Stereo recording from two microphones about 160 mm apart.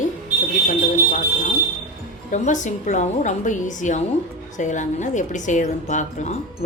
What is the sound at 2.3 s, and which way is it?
A woman's voice, 50° left (ahead or behind).